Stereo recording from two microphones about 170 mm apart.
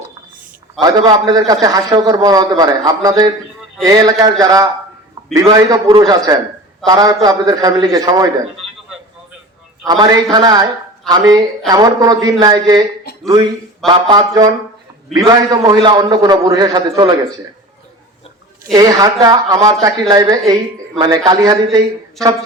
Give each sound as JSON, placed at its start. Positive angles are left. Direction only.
{"t": 0.8, "sound": "a man's voice", "side_deg": -25}
{"t": 9.8, "sound": "a man's voice", "side_deg": -25}
{"t": 18.7, "sound": "a man's voice", "side_deg": -20}